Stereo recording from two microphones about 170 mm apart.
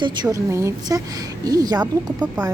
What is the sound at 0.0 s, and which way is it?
A woman's voice, 25° right (ahead or behind).